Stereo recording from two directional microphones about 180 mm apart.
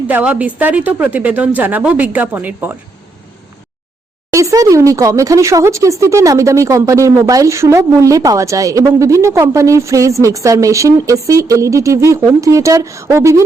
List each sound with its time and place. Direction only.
0.1 s speech: 10° right (ahead or behind)
4.3 s speech: 15° right (ahead or behind)